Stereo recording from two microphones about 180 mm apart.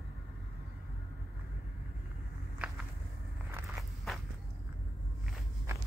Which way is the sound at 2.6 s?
5° right (ahead or behind).